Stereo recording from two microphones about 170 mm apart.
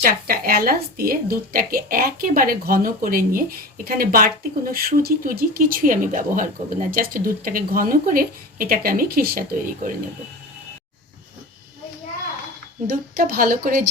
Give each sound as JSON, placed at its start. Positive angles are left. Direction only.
{"t": 0.0, "sound": "speech", "side_deg": -60}
{"t": 12.9, "sound": "speech", "side_deg": -55}